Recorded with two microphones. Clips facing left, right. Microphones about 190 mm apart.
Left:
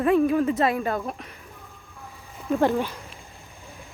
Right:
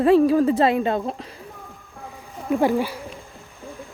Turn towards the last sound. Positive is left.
turn(degrees=-10)  # may be behind; listen again after turning